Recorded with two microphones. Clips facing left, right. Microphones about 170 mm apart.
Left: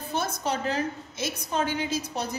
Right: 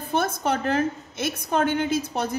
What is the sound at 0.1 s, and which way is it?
A woman's voice, 55° right (ahead or behind).